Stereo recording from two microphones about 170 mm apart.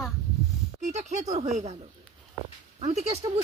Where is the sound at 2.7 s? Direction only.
40° right (ahead or behind).